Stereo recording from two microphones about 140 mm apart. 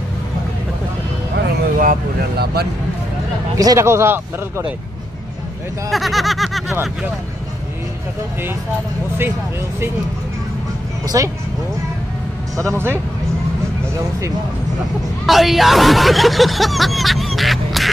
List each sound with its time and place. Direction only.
1.7 s vehicle: 80° right
3.5 s speech: 25° right (ahead or behind)
5.9 s speech: centre (ahead or behind)
11.1 s speech: 25° right (ahead or behind)
12.5 s speech: 20° right (ahead or behind)
15.2 s speech: centre (ahead or behind)